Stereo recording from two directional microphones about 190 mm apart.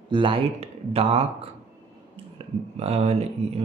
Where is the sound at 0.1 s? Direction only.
30° right (ahead or behind).